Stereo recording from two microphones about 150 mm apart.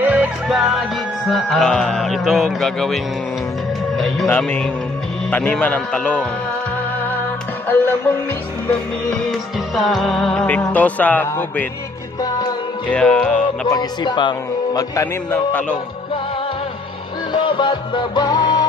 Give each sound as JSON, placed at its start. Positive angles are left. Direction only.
{"t": 0.0, "sound": "music", "side_deg": -10}
{"t": 4.3, "sound": "speech", "side_deg": 10}
{"t": 9.8, "sound": "speech", "side_deg": 0}
{"t": 12.2, "sound": "music", "side_deg": 25}
{"t": 12.9, "sound": "speech", "side_deg": 10}
{"t": 13.7, "sound": "a man's voice", "side_deg": 25}
{"t": 17.3, "sound": "music", "side_deg": 30}